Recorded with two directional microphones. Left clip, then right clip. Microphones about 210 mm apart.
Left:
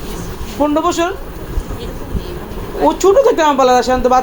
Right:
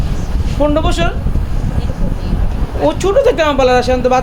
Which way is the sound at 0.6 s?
Centre (ahead or behind).